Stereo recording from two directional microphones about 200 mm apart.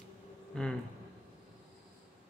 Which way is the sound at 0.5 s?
5° left (ahead or behind).